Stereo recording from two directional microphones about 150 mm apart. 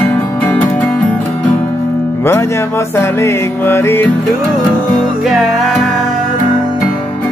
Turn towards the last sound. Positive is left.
turn(degrees=0)  # may be behind; listen again after turning